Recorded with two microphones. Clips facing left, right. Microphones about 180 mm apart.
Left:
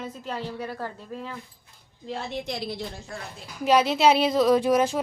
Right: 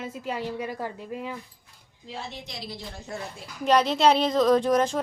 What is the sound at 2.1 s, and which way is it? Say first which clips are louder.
Speech: left 7 dB; 55° left (ahead or behind).